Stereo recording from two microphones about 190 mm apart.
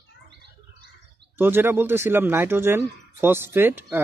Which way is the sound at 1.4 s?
10° right (ahead or behind).